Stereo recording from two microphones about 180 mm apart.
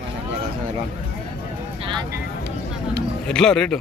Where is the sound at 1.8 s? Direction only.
25° right (ahead or behind).